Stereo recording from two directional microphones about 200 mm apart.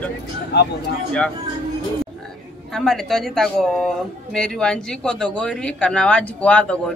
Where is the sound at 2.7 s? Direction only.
Centre (ahead or behind).